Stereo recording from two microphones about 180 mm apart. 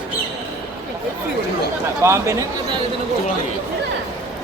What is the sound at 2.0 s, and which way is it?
Speech, 15° right (ahead or behind).